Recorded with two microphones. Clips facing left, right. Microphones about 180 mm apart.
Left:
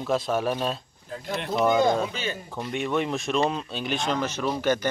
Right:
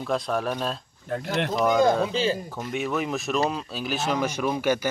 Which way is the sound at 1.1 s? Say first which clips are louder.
Right 5 dB; 65° right (ahead or behind).